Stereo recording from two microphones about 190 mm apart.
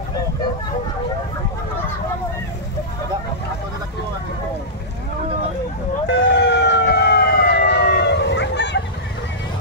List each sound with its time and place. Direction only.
6.0 s emergency vehicle: 70° left (ahead or behind)